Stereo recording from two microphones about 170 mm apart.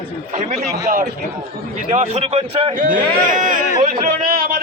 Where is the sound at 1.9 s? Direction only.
40° right (ahead or behind).